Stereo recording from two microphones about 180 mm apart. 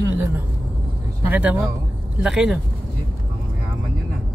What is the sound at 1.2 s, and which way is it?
Speech, 10° right (ahead or behind).